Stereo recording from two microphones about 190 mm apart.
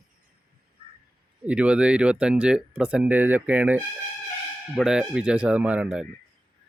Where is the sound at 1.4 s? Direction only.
5° right (ahead or behind).